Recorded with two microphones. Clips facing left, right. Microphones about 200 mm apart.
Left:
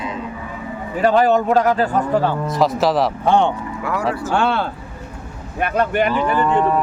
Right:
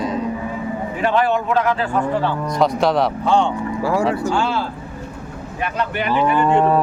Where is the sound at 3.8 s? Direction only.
25° right (ahead or behind).